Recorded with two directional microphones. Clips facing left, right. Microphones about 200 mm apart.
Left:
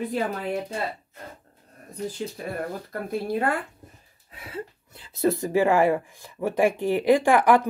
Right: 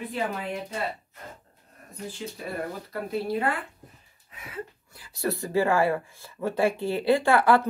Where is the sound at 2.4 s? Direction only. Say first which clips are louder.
Right 1 dB; 50° left (ahead or behind).